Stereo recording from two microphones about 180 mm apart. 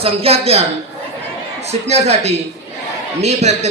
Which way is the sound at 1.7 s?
35° right (ahead or behind).